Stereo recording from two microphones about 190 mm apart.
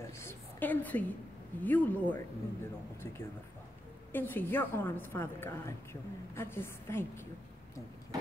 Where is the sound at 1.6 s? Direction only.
10° left (ahead or behind).